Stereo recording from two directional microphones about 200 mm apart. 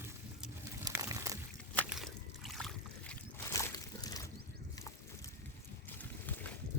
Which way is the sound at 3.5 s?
15° left (ahead or behind).